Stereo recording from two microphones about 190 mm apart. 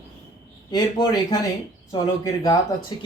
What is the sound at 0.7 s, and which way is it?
A man's voice, 20° left (ahead or behind).